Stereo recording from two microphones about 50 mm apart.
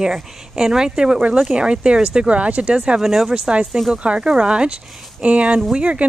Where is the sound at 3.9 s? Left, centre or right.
Right.